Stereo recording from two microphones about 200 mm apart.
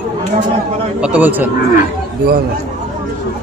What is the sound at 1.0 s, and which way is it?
Speech, 5° right (ahead or behind).